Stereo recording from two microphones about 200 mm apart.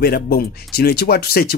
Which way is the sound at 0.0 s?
50° left (ahead or behind).